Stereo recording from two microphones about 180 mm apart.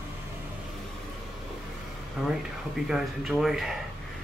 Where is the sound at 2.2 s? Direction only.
5° right (ahead or behind).